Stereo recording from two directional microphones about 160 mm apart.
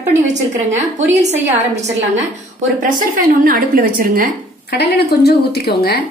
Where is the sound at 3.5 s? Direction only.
60° right (ahead or behind).